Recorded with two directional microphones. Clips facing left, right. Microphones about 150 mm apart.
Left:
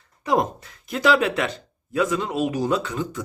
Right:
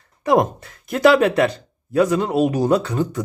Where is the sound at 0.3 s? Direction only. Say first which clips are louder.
Right 5 dB; 55° right (ahead or behind).